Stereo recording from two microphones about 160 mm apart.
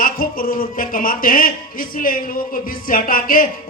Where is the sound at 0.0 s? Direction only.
60° left (ahead or behind).